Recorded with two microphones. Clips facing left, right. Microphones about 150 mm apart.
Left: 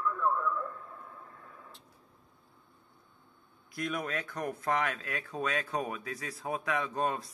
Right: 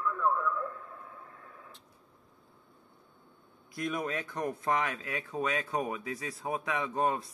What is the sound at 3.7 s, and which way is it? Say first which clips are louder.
Speech: right 1 dB; 20° right (ahead or behind).